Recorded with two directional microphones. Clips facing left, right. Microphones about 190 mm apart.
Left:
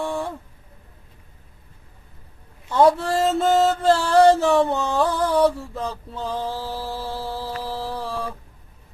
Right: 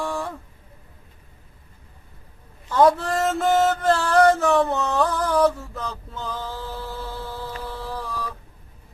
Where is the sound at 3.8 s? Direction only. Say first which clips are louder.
Left 4 dB; 25° left (ahead or behind).